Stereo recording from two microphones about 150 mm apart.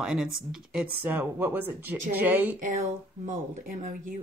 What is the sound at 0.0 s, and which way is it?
Speech, 5° right (ahead or behind).